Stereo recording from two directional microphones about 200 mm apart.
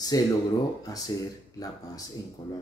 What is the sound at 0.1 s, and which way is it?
Speech, 20° left (ahead or behind).